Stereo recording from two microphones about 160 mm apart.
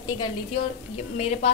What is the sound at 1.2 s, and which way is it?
Speech, 40° left (ahead or behind).